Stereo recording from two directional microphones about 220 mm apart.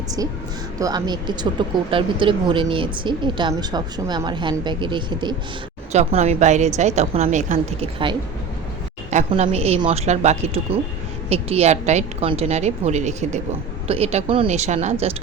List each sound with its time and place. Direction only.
0.2 s a woman's voice: 15° right (ahead or behind)